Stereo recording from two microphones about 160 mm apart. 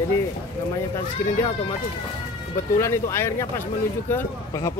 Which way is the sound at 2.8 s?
15° left (ahead or behind).